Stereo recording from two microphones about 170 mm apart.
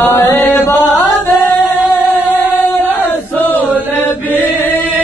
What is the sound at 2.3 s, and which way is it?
Singing, 10° left (ahead or behind).